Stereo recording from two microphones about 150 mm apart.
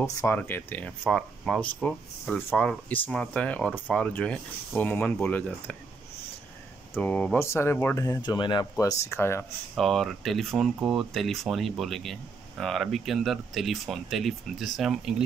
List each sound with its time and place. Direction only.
0.0 s speech: 20° left (ahead or behind)
7.0 s speech: 10° left (ahead or behind)
9.8 s speech: centre (ahead or behind)